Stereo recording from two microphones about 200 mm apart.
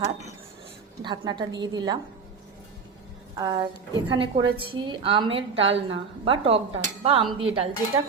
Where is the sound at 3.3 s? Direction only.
20° right (ahead or behind).